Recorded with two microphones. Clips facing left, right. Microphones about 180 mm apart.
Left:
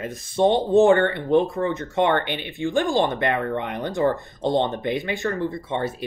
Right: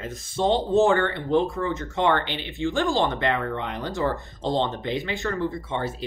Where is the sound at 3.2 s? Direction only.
55° left (ahead or behind).